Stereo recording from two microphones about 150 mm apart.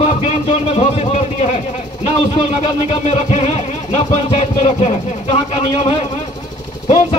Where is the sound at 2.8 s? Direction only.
45° left (ahead or behind).